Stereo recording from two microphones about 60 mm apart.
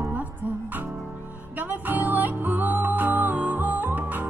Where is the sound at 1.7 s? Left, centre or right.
Right.